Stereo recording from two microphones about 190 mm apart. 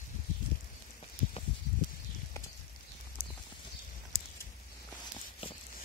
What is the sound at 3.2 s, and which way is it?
Clip-clop, 50° left (ahead or behind).